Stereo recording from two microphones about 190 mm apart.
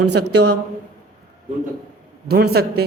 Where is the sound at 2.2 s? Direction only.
55° right (ahead or behind).